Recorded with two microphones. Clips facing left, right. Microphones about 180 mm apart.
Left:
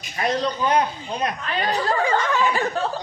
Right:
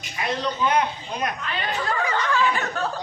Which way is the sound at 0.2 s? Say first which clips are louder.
Left 2 dB; 40° left (ahead or behind).